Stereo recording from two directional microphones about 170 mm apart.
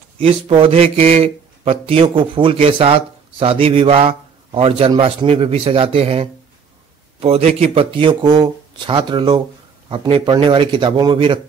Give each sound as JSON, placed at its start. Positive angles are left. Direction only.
{"t": 0.2, "sound": "speech", "side_deg": -35}